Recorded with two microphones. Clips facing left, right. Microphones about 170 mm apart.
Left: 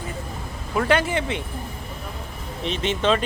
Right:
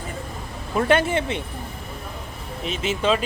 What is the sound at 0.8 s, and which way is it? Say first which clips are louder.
Speech: right 1 dB; 25° right (ahead or behind).